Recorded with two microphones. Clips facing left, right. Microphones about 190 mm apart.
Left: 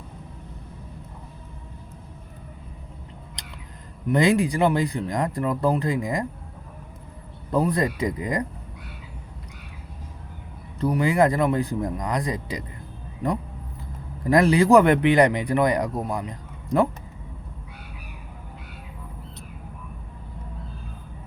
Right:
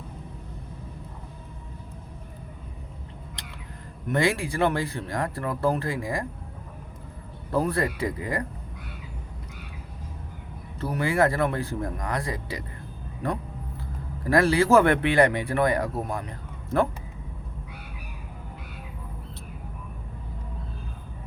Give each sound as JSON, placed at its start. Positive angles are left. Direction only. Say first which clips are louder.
{"t": 4.1, "sound": "speech", "louder": "left 5 dB", "side_deg": 20}
{"t": 7.5, "sound": "speech", "louder": "left 3 dB", "side_deg": 20}
{"t": 10.9, "sound": "speech", "louder": "left 2 dB", "side_deg": 20}
{"t": 14.3, "sound": "speech", "louder": "left 3 dB", "side_deg": 20}